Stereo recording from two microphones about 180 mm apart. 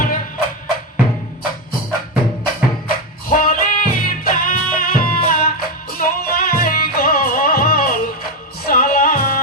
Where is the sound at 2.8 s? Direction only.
50° left (ahead or behind).